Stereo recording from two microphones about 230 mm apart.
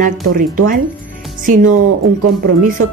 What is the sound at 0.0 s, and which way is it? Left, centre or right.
Speech, right.